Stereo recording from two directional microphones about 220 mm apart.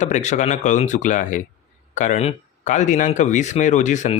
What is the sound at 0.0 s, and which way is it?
A man's voice, 35° left (ahead or behind).